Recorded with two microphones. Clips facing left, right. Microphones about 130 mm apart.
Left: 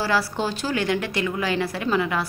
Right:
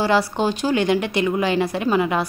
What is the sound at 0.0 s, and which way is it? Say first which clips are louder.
Speech: right 5 dB; 20° right (ahead or behind).